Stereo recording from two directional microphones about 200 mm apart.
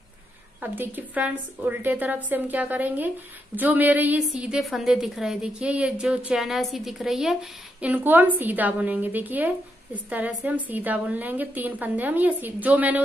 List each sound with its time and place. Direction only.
0.6 s a woman's voice: 10° right (ahead or behind)